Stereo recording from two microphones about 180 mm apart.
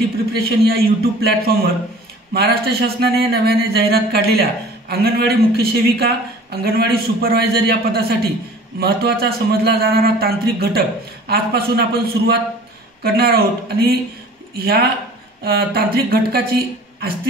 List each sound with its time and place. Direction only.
0.3 s speech: 60° right (ahead or behind)